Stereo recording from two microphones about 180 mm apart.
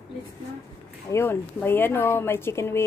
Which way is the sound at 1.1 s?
10° left (ahead or behind).